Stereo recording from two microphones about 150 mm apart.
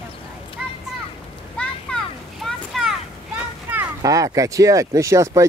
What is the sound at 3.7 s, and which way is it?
Speech, 20° right (ahead or behind).